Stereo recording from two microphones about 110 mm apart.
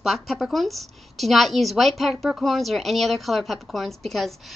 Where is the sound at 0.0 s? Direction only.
Centre (ahead or behind).